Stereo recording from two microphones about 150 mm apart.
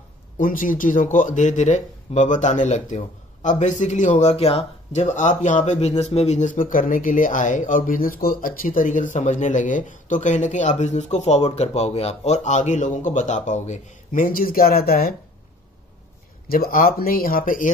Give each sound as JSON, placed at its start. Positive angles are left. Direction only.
{"t": 0.4, "sound": "speech", "side_deg": 65}
{"t": 16.4, "sound": "speech", "side_deg": 75}